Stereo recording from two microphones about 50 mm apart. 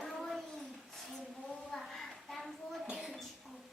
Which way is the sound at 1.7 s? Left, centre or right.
Centre.